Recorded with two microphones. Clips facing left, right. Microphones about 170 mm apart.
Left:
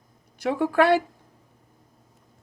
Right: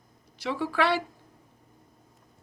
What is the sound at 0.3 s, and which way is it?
Speech, 50° left (ahead or behind).